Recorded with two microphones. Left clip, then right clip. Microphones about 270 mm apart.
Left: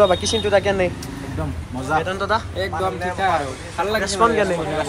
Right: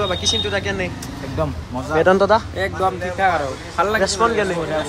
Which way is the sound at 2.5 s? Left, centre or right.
Centre.